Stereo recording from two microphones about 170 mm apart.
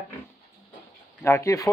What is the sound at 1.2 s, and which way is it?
Speech, 15° left (ahead or behind).